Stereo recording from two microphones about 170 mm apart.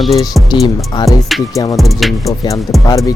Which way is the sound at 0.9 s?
25° left (ahead or behind).